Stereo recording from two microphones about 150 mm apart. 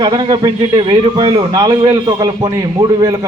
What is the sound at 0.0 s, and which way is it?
A man's voice, 30° right (ahead or behind).